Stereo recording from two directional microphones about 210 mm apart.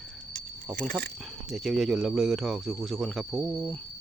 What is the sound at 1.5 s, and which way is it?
Speech, centre (ahead or behind).